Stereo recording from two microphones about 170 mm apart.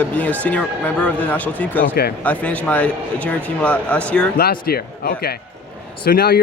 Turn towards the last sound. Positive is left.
turn(degrees=60)  # may be behind; listen again after turning